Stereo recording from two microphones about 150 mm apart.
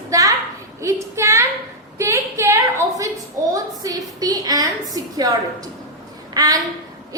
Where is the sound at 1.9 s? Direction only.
20° right (ahead or behind).